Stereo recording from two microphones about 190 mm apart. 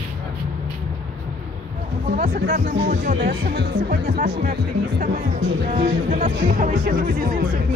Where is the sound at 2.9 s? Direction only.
45° right (ahead or behind).